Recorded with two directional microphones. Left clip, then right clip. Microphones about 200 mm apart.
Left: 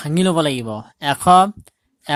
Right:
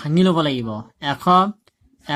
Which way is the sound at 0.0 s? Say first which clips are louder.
Left 1 dB; 30° left (ahead or behind).